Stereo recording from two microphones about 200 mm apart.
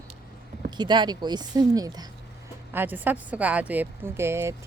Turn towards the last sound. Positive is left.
turn(degrees=-10)  # may be behind; listen again after turning